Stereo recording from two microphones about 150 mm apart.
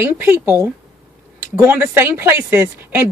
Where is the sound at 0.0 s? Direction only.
15° right (ahead or behind).